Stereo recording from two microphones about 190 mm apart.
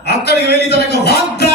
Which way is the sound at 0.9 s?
60° left (ahead or behind).